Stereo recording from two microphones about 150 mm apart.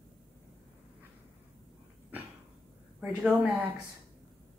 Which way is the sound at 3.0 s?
5° right (ahead or behind).